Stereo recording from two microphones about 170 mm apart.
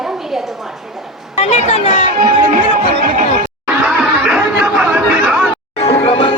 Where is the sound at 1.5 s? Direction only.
35° left (ahead or behind).